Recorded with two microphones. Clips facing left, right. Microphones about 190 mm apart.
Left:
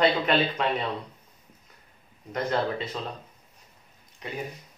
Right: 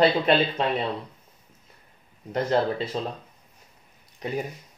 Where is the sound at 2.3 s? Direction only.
30° right (ahead or behind).